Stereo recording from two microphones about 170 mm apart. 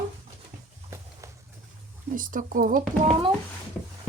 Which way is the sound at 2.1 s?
55° right (ahead or behind).